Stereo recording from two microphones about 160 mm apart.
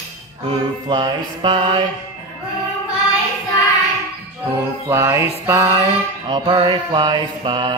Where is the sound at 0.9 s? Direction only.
25° right (ahead or behind).